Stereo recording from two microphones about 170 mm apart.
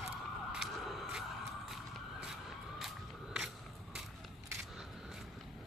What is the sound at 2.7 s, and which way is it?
Crowd, centre (ahead or behind).